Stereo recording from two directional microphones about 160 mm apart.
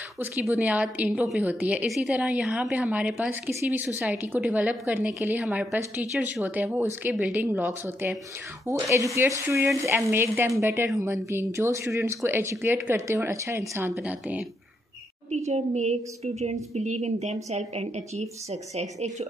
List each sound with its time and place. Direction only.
0.2 s a woman's voice: 10° right (ahead or behind)
15.4 s a woman's voice: 45° right (ahead or behind)